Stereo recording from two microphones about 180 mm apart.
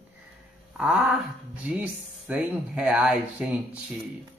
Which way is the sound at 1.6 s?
5° right (ahead or behind).